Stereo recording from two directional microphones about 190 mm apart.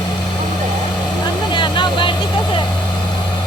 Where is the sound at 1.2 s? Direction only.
25° left (ahead or behind).